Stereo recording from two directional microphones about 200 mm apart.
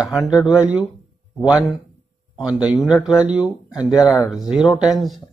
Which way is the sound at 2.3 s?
5° right (ahead or behind).